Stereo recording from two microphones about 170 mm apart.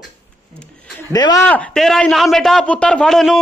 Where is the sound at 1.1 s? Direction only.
20° left (ahead or behind).